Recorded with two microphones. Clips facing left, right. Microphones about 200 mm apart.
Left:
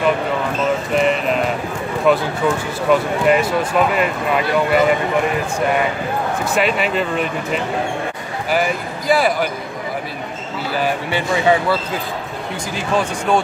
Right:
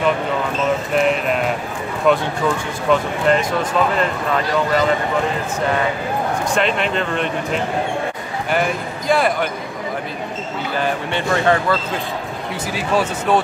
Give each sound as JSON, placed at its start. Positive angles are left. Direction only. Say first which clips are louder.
{"t": 0.9, "sound": "a sound", "louder": "left 1 dB", "side_deg": 0}
{"t": 2.0, "sound": "speech", "louder": "left 1 dB", "side_deg": 5}
{"t": 6.4, "sound": "speech", "louder": "left 2 dB", "side_deg": 5}
{"t": 10.7, "sound": "speech", "louder": "left 2 dB", "side_deg": 5}
{"t": 12.7, "sound": "speech", "louder": "even", "side_deg": -5}